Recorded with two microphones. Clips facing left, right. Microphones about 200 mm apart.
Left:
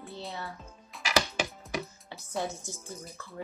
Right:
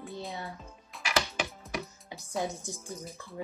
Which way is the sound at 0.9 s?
Centre (ahead or behind).